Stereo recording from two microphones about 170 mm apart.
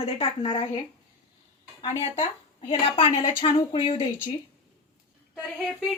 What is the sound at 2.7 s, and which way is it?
A woman's voice, 35° left (ahead or behind).